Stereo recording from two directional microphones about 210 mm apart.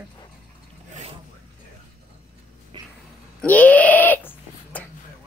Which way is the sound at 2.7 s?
25° right (ahead or behind).